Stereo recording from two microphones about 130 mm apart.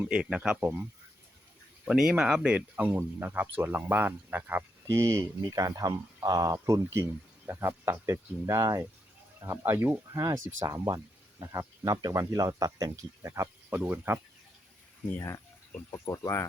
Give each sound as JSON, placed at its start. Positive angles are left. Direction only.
{"t": 0.0, "sound": "speech", "side_deg": -5}
{"t": 1.9, "sound": "speech", "side_deg": -5}
{"t": 15.9, "sound": "speech", "side_deg": 25}